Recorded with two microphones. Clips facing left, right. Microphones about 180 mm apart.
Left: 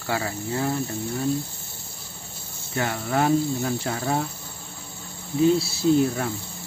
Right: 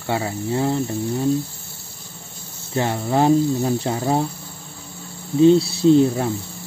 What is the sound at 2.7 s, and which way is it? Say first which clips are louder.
Speech: right 5 dB; 25° right (ahead or behind).